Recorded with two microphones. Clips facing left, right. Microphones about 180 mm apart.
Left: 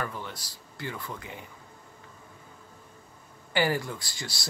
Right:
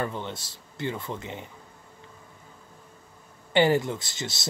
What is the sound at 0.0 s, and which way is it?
Speech, 25° right (ahead or behind).